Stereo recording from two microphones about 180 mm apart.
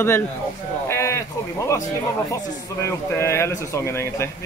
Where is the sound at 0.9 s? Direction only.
15° left (ahead or behind).